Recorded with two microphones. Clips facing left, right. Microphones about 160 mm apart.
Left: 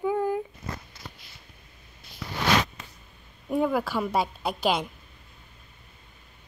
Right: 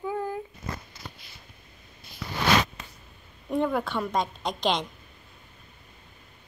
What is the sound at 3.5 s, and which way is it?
Speech, 5° left (ahead or behind).